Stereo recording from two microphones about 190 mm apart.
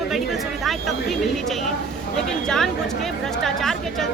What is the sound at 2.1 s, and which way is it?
Speech, centre (ahead or behind).